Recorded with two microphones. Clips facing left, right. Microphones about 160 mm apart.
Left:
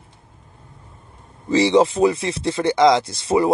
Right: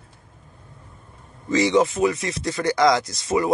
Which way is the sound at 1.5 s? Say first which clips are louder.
Left 3 dB; 30° left (ahead or behind).